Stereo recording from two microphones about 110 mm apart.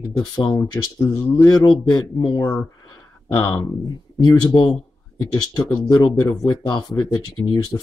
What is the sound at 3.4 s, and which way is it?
Speech, 35° left (ahead or behind).